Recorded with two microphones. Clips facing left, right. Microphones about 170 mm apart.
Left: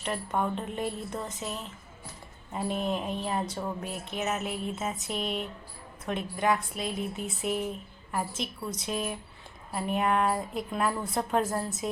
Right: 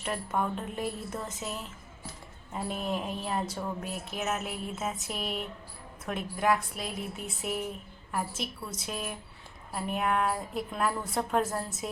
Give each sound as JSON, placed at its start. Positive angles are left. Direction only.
{"t": 0.0, "sound": "a woman's voice", "side_deg": 0}
{"t": 2.5, "sound": "a woman's voice", "side_deg": 0}